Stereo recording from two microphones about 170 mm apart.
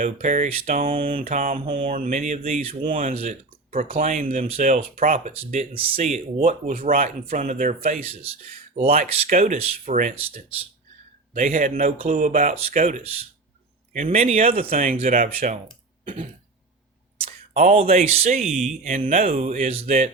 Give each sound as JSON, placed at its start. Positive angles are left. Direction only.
{"t": 0.0, "sound": "speech", "side_deg": -45}
{"t": 0.9, "sound": "speech", "side_deg": -35}
{"t": 1.3, "sound": "speech", "side_deg": -45}
{"t": 1.6, "sound": "speech", "side_deg": -30}
{"t": 1.9, "sound": "speech", "side_deg": -50}
{"t": 2.8, "sound": "speech", "side_deg": -50}
{"t": 3.1, "sound": "speech", "side_deg": -35}
{"t": 5.5, "sound": "speech", "side_deg": -35}
{"t": 7.8, "sound": "speech", "side_deg": -35}
{"t": 15.1, "sound": "speech", "side_deg": -55}
{"t": 17.2, "sound": "a sound", "side_deg": -50}
{"t": 17.7, "sound": "speech", "side_deg": -40}
{"t": 18.8, "sound": "speech", "side_deg": -50}
{"t": 19.3, "sound": "speech", "side_deg": -40}